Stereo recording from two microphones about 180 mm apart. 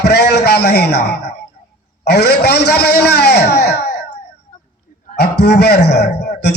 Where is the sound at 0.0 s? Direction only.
65° left (ahead or behind).